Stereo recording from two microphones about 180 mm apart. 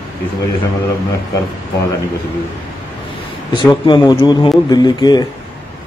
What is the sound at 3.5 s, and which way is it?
Speech, 25° left (ahead or behind).